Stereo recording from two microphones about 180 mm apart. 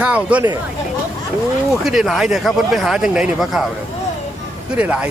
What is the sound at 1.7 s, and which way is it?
Speech, centre (ahead or behind).